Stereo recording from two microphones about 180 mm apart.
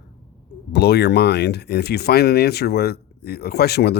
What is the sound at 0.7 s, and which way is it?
Speech, 65° left (ahead or behind).